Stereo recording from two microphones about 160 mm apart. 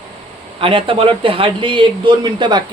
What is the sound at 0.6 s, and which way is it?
Speech, 35° right (ahead or behind).